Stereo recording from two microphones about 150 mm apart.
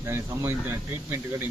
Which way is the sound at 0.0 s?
15° right (ahead or behind).